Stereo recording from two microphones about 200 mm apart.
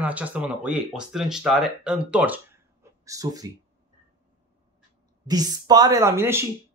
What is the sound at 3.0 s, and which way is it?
Speech, 15° right (ahead or behind).